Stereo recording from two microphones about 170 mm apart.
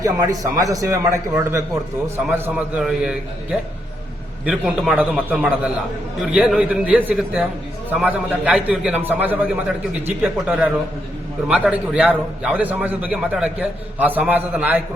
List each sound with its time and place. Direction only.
0.0 s a man's voice: 20° right (ahead or behind)
2.3 s a man's voice: 5° right (ahead or behind)
4.4 s a man's voice: 5° right (ahead or behind)